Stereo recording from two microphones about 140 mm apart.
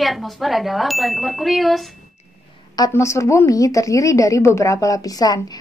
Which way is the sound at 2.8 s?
20° left (ahead or behind).